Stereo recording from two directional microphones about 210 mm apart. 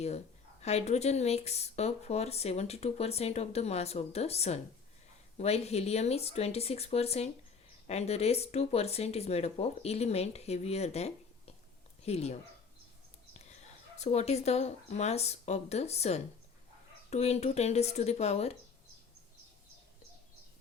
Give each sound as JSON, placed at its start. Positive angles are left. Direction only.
{"t": 0.6, "sound": "speech", "side_deg": 30}
{"t": 13.5, "sound": "speech", "side_deg": 35}